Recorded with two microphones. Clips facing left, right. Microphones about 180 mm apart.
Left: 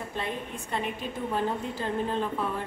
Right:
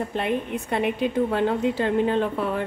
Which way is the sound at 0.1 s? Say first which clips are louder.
Right 8 dB; 70° right (ahead or behind).